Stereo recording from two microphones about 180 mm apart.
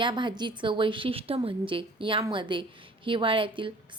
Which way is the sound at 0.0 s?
25° right (ahead or behind).